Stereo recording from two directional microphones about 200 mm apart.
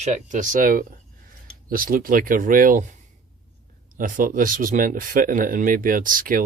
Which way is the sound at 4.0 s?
45° right (ahead or behind).